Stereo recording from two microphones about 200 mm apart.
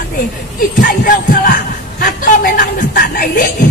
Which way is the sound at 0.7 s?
45° left (ahead or behind).